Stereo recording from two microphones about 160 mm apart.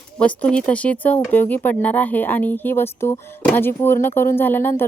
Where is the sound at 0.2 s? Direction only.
5° left (ahead or behind).